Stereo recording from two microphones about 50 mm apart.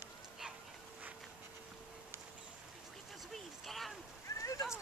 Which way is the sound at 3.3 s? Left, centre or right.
Centre.